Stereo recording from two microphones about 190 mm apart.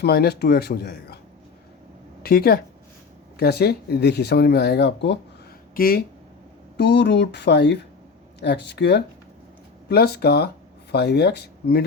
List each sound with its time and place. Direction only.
0.0 s speech: 55° left (ahead or behind)
2.2 s speech: 55° left (ahead or behind)
5.7 s speech: 50° left (ahead or behind)
6.7 s speech: 65° left (ahead or behind)